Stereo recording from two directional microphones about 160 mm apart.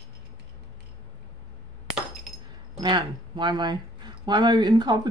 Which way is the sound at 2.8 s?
30° right (ahead or behind).